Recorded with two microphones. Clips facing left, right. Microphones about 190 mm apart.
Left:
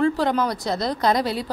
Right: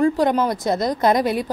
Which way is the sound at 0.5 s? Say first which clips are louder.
Right 4 dB; 50° right (ahead or behind).